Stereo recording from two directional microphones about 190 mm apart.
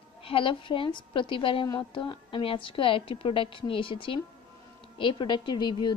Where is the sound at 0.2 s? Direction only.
30° left (ahead or behind).